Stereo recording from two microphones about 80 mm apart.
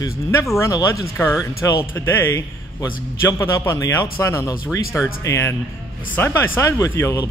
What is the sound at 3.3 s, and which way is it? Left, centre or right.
Speech, left.